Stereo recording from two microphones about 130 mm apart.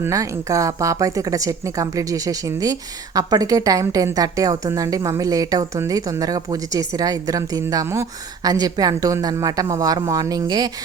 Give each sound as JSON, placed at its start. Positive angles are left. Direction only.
{"t": 0.0, "sound": "a woman's voice", "side_deg": -25}